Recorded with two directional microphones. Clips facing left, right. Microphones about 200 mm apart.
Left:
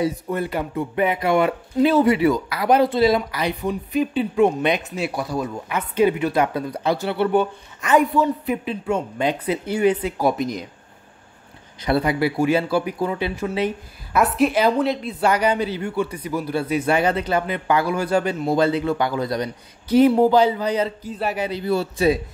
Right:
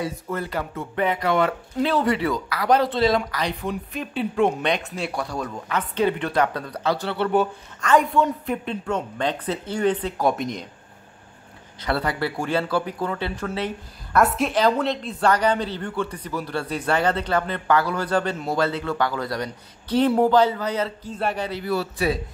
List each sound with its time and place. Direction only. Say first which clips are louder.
0.0 s speech: left 5 dB; 20° left (ahead or behind); by 10.7 s centre (ahead or behind)
11.8 s speech: left 5 dB; 15° left (ahead or behind)
14.1 s speech: left 2 dB; centre (ahead or behind)
21.2 s speech: left 1 dB; 5° left (ahead or behind)
21.5 s a man's voice: left 3 dB; 20° left (ahead or behind)